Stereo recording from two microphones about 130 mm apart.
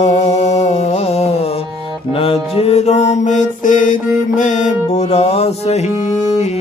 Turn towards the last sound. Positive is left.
turn(degrees=60)  # may be behind; listen again after turning